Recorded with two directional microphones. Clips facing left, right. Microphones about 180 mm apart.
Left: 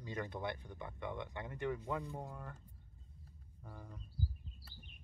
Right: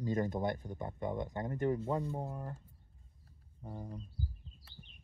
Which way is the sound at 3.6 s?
25° right (ahead or behind).